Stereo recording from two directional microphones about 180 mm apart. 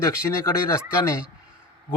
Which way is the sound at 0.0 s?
15° left (ahead or behind).